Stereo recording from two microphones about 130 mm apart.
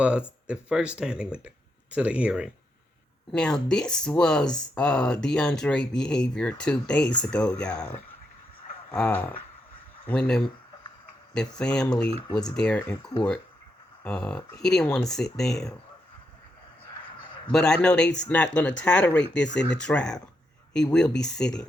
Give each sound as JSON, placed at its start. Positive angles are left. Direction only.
{"t": 0.0, "sound": "speech", "side_deg": -10}
{"t": 3.3, "sound": "speech", "side_deg": 5}
{"t": 9.0, "sound": "speech", "side_deg": 10}
{"t": 11.6, "sound": "speech", "side_deg": 5}
{"t": 13.0, "sound": "speech", "side_deg": 35}
{"t": 14.0, "sound": "speech", "side_deg": 10}
{"t": 17.5, "sound": "speech", "side_deg": 5}